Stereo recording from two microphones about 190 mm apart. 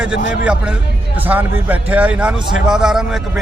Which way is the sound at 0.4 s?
5° right (ahead or behind).